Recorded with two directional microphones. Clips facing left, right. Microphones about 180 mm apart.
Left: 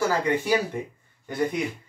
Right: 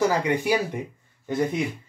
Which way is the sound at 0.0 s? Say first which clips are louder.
Right 2 dB; 15° right (ahead or behind).